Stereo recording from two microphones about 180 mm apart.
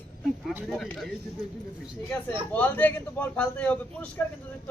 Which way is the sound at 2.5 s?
10° left (ahead or behind).